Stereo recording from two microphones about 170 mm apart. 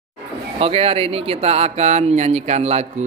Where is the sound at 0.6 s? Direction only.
35° right (ahead or behind).